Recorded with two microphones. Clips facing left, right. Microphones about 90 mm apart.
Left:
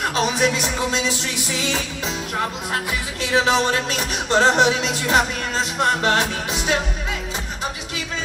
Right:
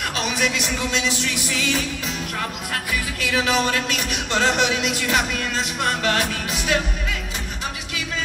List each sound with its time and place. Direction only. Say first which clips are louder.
0.0 s music: left 4 dB; 30° left (ahead or behind)